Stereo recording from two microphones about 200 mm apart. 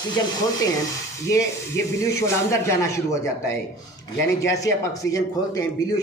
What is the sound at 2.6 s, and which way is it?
A man's voice, 15° left (ahead or behind).